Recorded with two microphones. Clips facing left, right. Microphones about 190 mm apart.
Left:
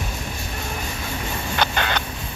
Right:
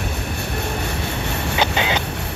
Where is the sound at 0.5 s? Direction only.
65° right (ahead or behind).